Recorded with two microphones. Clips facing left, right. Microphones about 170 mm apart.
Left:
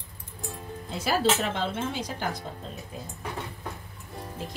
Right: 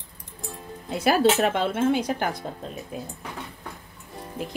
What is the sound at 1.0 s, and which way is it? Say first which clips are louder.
Speech: right 6 dB; 60° right (ahead or behind).